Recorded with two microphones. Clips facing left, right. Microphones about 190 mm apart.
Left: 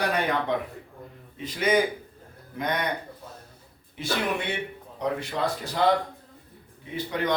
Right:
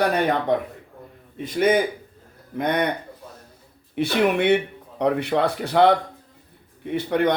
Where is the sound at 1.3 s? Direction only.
55° right (ahead or behind).